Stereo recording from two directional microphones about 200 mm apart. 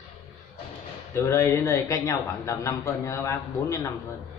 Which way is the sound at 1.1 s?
15° left (ahead or behind).